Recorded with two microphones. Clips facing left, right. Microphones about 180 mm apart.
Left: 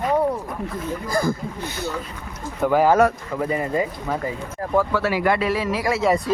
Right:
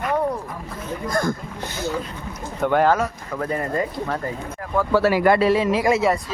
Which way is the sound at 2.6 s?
5° left (ahead or behind).